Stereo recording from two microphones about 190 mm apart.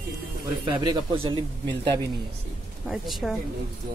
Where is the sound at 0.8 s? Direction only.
25° right (ahead or behind).